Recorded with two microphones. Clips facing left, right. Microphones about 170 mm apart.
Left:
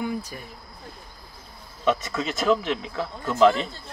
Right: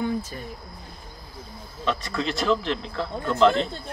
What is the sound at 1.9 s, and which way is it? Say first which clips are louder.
Speech: left 2 dB; 5° left (ahead or behind).